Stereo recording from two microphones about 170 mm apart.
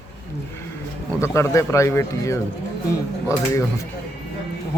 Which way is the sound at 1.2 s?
15° left (ahead or behind).